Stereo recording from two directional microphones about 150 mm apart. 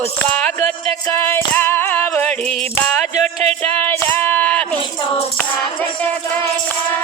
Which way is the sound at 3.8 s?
15° left (ahead or behind).